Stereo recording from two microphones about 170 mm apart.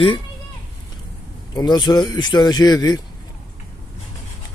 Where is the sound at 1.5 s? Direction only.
25° left (ahead or behind).